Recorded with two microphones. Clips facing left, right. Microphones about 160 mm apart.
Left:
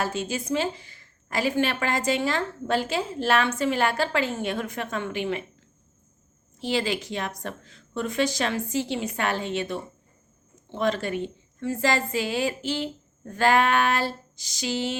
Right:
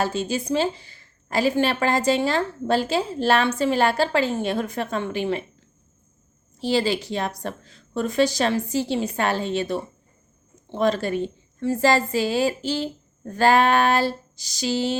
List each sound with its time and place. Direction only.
0.0 s a woman's voice: 30° right (ahead or behind)
6.6 s a woman's voice: 35° right (ahead or behind)